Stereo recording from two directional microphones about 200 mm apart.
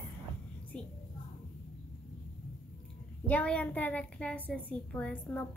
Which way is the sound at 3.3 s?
5° left (ahead or behind).